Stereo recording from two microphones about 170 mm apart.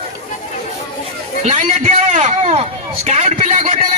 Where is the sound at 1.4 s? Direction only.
45° right (ahead or behind).